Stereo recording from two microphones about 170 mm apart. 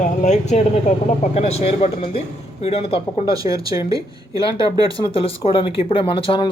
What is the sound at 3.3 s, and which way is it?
Speech, 20° right (ahead or behind).